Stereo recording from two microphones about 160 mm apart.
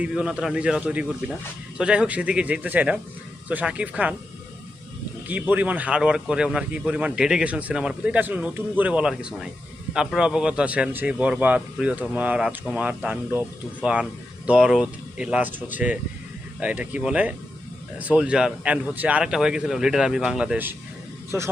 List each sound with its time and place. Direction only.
0.0 s speech: 5° right (ahead or behind)
5.3 s speech: 10° right (ahead or behind)